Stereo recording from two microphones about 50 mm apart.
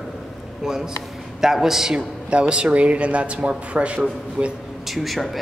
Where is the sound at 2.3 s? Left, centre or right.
Right.